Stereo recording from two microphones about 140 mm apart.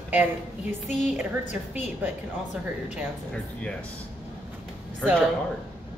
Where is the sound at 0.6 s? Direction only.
55° left (ahead or behind).